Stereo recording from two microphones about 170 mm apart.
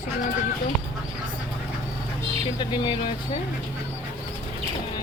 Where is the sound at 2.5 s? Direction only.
30° left (ahead or behind).